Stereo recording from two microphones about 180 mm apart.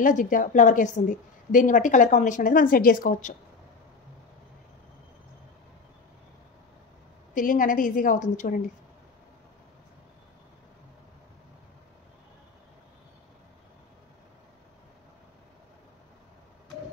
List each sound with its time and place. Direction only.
0.0 s a woman's voice: 45° left (ahead or behind)
7.3 s a woman's voice: 50° left (ahead or behind)